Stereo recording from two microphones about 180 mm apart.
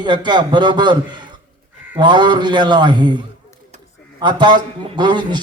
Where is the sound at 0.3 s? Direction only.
25° right (ahead or behind).